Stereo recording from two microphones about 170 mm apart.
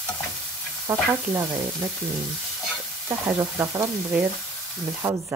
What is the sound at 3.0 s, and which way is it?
Frying, 20° right (ahead or behind).